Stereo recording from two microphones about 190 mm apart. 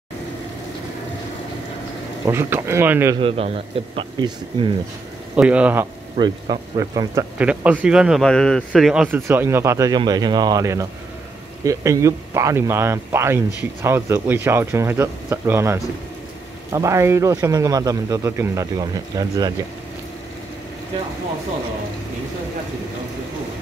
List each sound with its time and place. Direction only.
2.2 s speech: 15° right (ahead or behind)
3.2 s a man's voice: 30° right (ahead or behind)
5.3 s speech: 5° right (ahead or behind)
6.1 s speech: 25° right (ahead or behind)